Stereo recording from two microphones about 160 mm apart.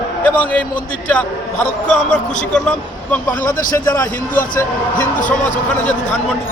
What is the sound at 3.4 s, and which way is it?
Speech, 55° left (ahead or behind).